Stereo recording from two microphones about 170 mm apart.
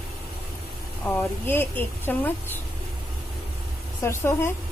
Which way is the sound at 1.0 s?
10° left (ahead or behind).